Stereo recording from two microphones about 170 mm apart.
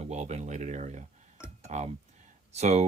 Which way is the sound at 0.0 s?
40° right (ahead or behind).